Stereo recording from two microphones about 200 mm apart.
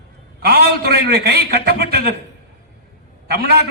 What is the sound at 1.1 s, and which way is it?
A man's voice, 50° right (ahead or behind).